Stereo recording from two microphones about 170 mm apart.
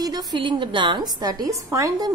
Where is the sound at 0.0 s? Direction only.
25° right (ahead or behind).